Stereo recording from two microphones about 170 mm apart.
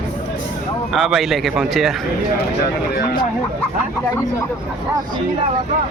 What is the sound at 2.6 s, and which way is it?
Speech, 75° left (ahead or behind).